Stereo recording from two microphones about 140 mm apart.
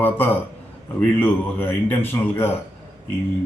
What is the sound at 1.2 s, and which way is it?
Speech, 15° left (ahead or behind).